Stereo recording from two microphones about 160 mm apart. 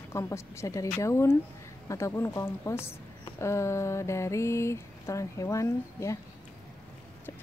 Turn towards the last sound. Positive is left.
turn(degrees=15)  # may be behind; listen again after turning